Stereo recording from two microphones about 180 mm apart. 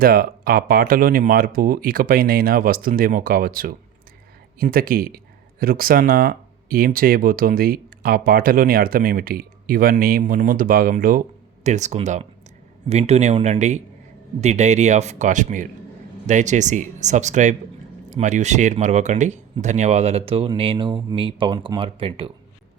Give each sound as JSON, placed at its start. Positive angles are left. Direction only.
{"t": 0.0, "sound": "speech", "side_deg": -55}